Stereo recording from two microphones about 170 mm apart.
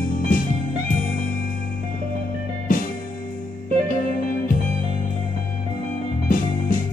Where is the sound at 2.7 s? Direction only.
55° left (ahead or behind).